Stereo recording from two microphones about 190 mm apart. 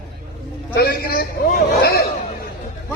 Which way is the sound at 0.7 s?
55° left (ahead or behind).